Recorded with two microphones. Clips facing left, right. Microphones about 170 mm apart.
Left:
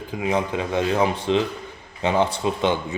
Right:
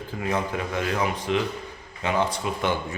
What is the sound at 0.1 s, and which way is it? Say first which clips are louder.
A man's voice: left 4 dB; 15° left (ahead or behind).